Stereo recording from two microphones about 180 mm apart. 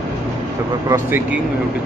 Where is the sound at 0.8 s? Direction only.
15° right (ahead or behind).